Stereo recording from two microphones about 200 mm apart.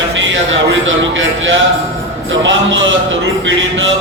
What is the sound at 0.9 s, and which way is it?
Speech, 75° right (ahead or behind).